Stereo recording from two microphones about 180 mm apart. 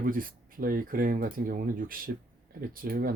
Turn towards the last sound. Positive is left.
turn(degrees=-55)  # may be behind; listen again after turning